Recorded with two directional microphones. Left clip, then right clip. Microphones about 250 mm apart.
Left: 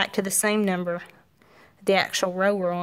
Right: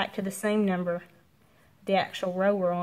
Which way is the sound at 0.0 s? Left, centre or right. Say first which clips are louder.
Left 6 dB; left.